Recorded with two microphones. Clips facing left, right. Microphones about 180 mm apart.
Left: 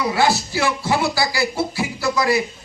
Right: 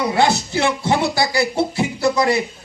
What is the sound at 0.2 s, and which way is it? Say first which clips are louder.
A man's voice: right 2 dB; 20° right (ahead or behind).